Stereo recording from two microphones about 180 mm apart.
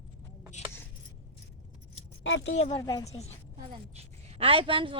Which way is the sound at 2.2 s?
90° left.